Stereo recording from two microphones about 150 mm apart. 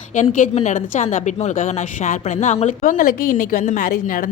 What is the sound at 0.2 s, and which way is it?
A woman's voice, 55° left (ahead or behind).